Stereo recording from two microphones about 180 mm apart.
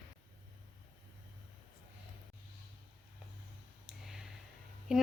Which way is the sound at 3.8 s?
5° right (ahead or behind).